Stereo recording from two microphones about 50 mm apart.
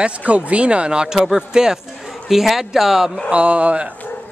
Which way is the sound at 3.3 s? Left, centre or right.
Right.